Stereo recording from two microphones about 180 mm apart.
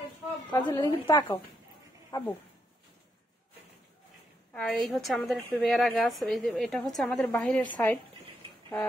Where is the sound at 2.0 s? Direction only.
20° left (ahead or behind).